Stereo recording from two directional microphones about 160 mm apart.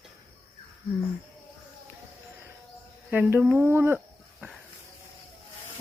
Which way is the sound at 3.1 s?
15° right (ahead or behind).